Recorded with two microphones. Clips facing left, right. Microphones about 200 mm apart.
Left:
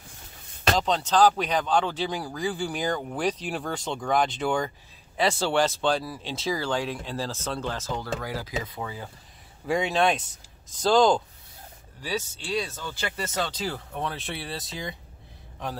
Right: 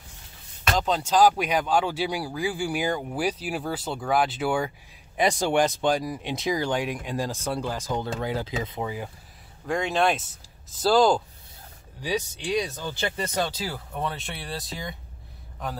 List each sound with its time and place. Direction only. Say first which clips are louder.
0.7 s speech: right 1 dB; 5° right (ahead or behind)
9.7 s speech: even; 5° left (ahead or behind)
12.0 s speech: right 3 dB; 15° right (ahead or behind); by 15.0 s centre (ahead or behind)